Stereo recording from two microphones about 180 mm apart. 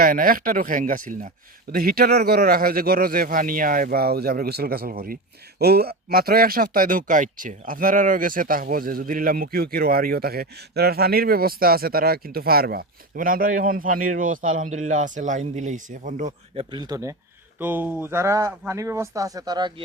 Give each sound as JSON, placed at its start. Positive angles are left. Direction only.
{"t": 0.0, "sound": "speech", "side_deg": -50}
{"t": 16.7, "sound": "speech", "side_deg": -20}